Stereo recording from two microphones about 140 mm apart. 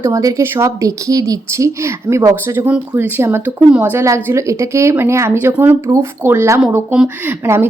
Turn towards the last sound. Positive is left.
turn(degrees=-20)  # may be behind; listen again after turning